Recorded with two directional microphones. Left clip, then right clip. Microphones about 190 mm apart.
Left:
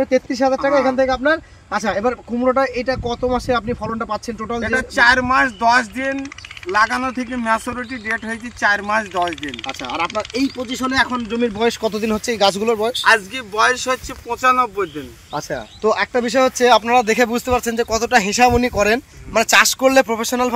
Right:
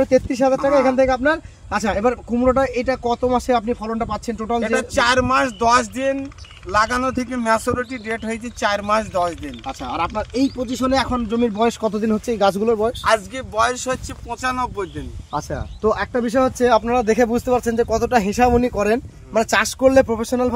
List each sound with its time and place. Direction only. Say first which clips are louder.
0.0 s speech: right 1 dB; 30° right (ahead or behind)
4.6 s speech: left 1 dB; 20° right (ahead or behind)
6.7 s speech: left 1 dB; 40° right (ahead or behind)
9.2 s speech: left 1 dB; 55° right (ahead or behind)
13.0 s speech: left 4 dB; 70° right (ahead or behind); by 20.5 s 40° right (ahead or behind)